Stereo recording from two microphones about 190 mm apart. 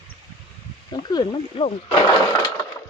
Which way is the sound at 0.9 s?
25° left (ahead or behind).